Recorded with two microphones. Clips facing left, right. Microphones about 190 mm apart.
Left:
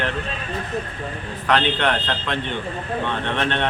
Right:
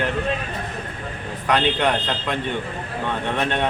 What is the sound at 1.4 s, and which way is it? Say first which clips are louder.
Speech: even; 15° right (ahead or behind).